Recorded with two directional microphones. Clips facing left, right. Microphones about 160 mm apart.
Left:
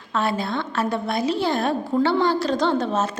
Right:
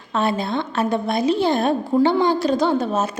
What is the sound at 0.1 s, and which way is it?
A woman's voice, 20° right (ahead or behind).